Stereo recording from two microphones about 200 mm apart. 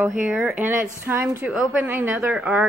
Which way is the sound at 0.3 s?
10° right (ahead or behind).